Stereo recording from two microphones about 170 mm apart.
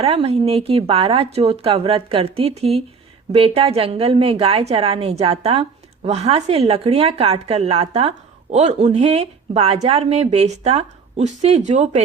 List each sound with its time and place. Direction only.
0.0 s a woman's voice: 35° right (ahead or behind)